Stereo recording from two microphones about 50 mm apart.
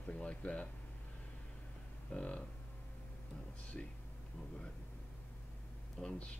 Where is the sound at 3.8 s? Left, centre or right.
Centre.